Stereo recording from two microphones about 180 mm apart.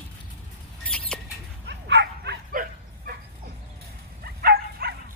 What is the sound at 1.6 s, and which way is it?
Bow-wow, 70° right (ahead or behind).